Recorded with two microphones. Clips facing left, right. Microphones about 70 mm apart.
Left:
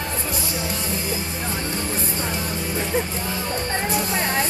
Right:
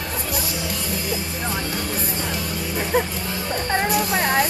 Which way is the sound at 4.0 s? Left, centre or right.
Right.